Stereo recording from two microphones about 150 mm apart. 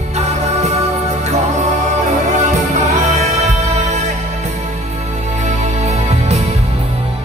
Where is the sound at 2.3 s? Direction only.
55° right (ahead or behind).